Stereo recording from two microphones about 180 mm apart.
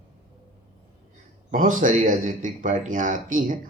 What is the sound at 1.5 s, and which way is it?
Speech, 45° right (ahead or behind).